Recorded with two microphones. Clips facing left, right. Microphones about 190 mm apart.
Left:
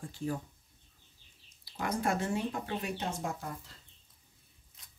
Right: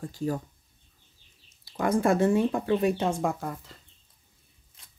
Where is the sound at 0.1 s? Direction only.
40° right (ahead or behind).